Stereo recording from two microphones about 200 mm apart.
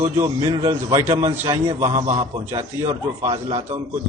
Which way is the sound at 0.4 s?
15° right (ahead or behind).